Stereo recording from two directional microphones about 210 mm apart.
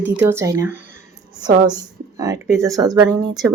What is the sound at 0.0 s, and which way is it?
A woman's voice, 10° right (ahead or behind).